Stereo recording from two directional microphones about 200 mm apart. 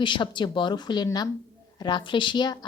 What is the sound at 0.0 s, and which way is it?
A woman's voice, 25° left (ahead or behind).